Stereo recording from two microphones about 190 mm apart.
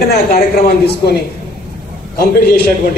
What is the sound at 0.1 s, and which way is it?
Speech, 55° left (ahead or behind).